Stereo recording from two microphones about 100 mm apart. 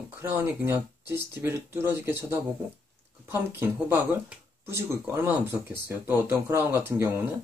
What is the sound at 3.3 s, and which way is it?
Speech, 25° right (ahead or behind).